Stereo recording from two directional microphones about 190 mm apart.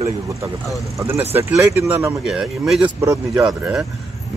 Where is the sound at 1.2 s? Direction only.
15° right (ahead or behind).